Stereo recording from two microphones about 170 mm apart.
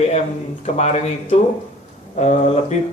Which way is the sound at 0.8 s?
40° left (ahead or behind).